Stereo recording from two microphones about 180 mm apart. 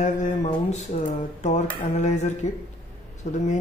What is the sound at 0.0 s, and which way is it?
Speech, 40° left (ahead or behind).